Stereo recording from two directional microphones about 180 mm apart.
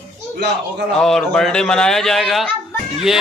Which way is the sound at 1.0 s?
5° left (ahead or behind).